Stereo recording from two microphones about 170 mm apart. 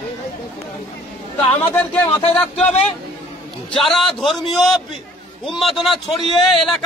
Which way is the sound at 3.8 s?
Centre (ahead or behind).